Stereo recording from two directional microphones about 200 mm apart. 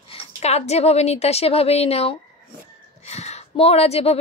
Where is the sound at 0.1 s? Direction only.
30° left (ahead or behind).